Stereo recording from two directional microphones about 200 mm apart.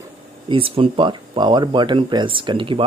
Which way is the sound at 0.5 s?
25° right (ahead or behind).